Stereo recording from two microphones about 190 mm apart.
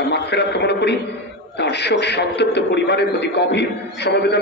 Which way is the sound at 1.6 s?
60° left (ahead or behind).